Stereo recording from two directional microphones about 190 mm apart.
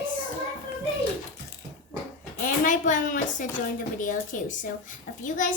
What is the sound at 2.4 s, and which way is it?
A woman's voice, 40° left (ahead or behind).